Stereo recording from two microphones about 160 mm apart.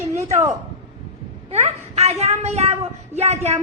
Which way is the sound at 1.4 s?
40° right (ahead or behind).